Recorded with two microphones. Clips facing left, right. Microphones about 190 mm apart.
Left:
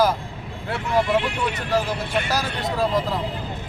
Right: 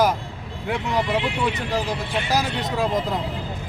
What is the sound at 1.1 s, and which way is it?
Speech, 45° left (ahead or behind).